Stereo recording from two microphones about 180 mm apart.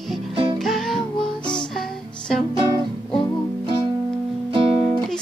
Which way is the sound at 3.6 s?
30° right (ahead or behind).